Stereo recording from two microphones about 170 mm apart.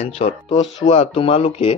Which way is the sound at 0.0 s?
35° left (ahead or behind).